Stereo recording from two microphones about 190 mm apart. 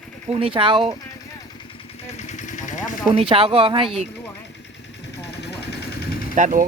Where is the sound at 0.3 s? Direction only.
30° right (ahead or behind).